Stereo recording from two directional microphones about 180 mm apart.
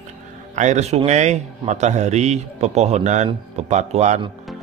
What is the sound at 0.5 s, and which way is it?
Speech, 40° right (ahead or behind).